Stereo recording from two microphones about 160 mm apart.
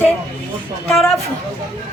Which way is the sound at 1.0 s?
Centre (ahead or behind).